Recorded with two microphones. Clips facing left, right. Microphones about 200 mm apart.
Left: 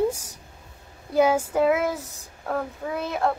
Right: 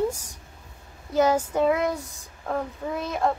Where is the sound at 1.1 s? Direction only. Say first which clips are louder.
Left 1 dB; 10° left (ahead or behind).